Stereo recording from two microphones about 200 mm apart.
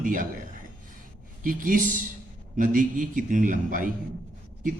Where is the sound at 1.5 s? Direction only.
45° right (ahead or behind).